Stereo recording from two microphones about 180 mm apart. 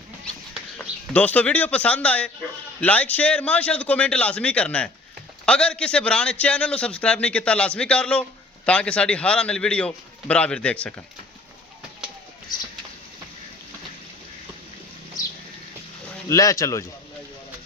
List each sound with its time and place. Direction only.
0.5 s a man's voice: 10° left (ahead or behind)
12.5 s a sound: 20° left (ahead or behind)
16.3 s a man's voice: 20° left (ahead or behind)